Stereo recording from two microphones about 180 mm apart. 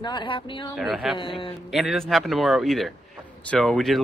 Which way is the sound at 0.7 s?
Centre (ahead or behind).